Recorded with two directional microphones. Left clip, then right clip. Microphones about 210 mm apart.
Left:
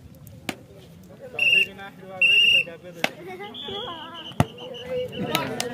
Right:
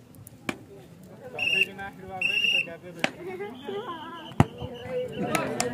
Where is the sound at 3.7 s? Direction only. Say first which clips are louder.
Left 1 dB; 30° left (ahead or behind).